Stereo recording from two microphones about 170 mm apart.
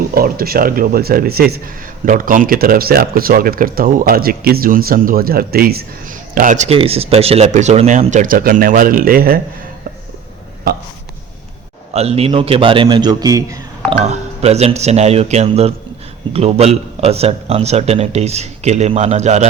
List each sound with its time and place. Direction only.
0.1 s speech: 60° right (ahead or behind)
2.0 s speech: 55° right (ahead or behind)
11.9 s a man's voice: 35° right (ahead or behind); by 13.6 s 20° right (ahead or behind)
13.9 s a man's voice: 40° right (ahead or behind)